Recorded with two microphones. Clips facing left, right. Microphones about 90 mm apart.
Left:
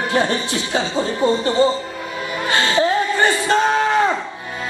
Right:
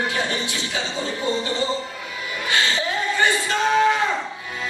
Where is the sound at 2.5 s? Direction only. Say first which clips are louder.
Left 6 dB; 40° left (ahead or behind).